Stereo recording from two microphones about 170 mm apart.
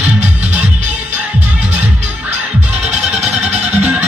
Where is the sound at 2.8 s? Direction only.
40° right (ahead or behind).